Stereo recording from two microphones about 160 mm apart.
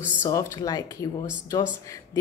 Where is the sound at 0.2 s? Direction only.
20° left (ahead or behind).